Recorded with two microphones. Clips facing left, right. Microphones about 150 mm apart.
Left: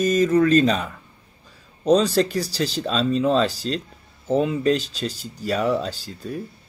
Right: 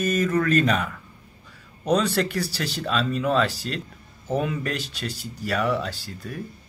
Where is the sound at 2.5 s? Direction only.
30° left (ahead or behind).